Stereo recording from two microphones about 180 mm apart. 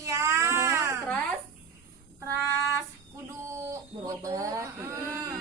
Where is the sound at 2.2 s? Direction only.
15° right (ahead or behind).